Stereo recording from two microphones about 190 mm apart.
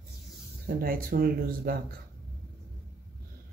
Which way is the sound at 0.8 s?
50° right (ahead or behind).